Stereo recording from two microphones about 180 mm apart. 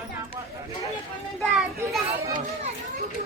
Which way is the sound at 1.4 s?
Centre (ahead or behind).